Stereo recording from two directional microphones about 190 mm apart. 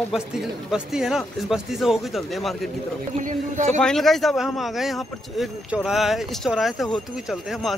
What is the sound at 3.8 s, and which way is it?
Speech, centre (ahead or behind).